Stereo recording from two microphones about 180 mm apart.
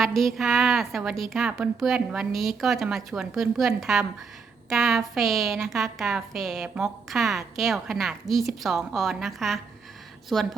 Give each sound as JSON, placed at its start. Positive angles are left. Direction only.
{"t": 0.0, "sound": "a woman's voice", "side_deg": 0}